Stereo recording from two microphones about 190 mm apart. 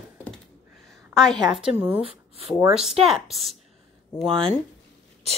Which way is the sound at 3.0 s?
Centre (ahead or behind).